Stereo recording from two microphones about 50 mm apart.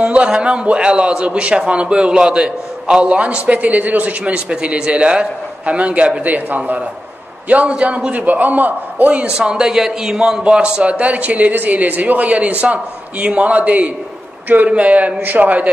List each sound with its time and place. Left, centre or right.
0.0 s a man's voice: right
9.4 s a man's voice: centre
10.4 s a man's voice: right